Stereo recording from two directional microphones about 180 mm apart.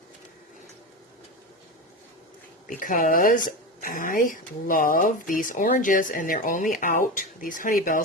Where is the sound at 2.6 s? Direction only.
50° left (ahead or behind).